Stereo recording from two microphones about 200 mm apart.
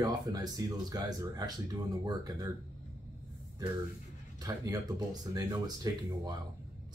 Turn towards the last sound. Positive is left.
turn(degrees=-20)  # may be behind; listen again after turning